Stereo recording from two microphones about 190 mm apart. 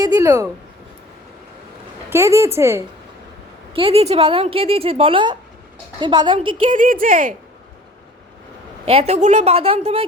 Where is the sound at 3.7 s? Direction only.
30° right (ahead or behind).